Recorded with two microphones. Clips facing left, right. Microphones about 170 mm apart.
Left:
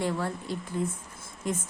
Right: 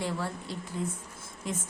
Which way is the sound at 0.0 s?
50° left (ahead or behind).